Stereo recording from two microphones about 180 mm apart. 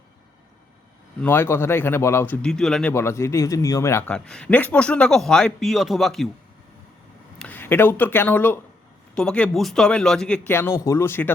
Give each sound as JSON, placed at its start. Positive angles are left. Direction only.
{"t": 1.2, "sound": "speech", "side_deg": 10}
{"t": 2.9, "sound": "a man's voice", "side_deg": 15}
{"t": 7.3, "sound": "a man's voice", "side_deg": 10}